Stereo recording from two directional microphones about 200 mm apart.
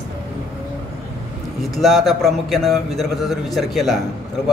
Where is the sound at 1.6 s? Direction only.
Centre (ahead or behind).